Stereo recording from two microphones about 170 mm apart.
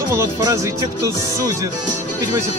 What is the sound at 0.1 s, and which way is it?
Speech, 20° right (ahead or behind).